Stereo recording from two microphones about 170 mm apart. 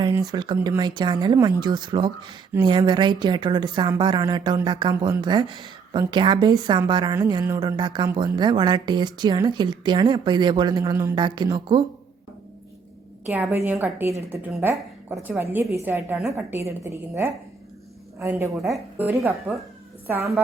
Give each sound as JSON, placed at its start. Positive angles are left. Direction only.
{"t": 0.1, "sound": "a woman's voice", "side_deg": -25}
{"t": 13.2, "sound": "a woman's voice", "side_deg": -10}